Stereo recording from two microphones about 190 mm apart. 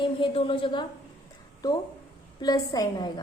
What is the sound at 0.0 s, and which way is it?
A woman's voice, 30° left (ahead or behind).